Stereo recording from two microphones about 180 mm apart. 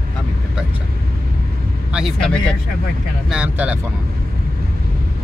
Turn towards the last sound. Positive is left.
turn(degrees=-10)  # may be behind; listen again after turning